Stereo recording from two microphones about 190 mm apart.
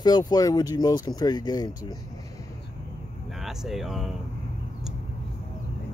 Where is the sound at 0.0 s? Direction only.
20° left (ahead or behind).